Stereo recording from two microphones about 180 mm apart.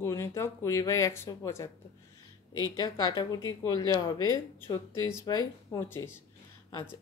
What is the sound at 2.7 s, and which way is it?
Speech, 20° left (ahead or behind).